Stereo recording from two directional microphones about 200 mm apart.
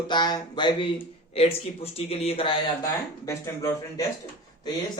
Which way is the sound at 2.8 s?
15° left (ahead or behind).